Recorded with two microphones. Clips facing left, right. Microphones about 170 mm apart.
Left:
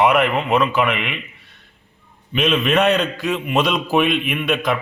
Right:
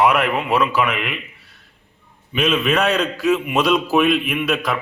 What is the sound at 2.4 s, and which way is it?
A man's voice, centre (ahead or behind).